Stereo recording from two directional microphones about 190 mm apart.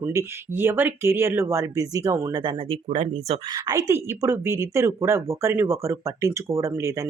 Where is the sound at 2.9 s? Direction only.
40° right (ahead or behind).